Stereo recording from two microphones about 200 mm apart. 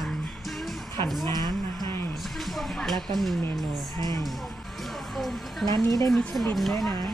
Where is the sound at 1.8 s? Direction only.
10° left (ahead or behind).